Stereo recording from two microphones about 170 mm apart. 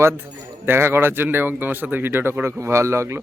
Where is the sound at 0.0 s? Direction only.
15° right (ahead or behind).